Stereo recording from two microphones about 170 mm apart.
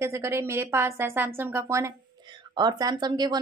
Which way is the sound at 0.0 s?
15° right (ahead or behind).